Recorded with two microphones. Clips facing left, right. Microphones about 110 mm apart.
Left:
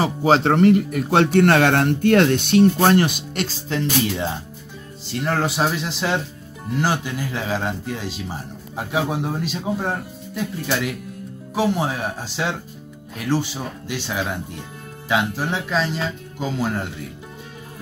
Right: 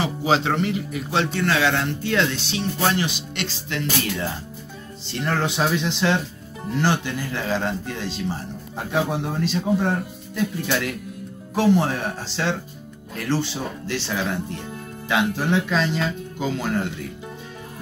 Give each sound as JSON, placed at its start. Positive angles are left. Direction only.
{"t": 0.0, "sound": "speech", "side_deg": 45}
{"t": 5.1, "sound": "speech", "side_deg": 5}